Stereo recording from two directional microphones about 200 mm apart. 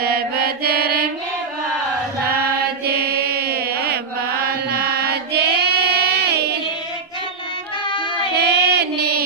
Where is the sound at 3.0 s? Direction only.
50° right (ahead or behind).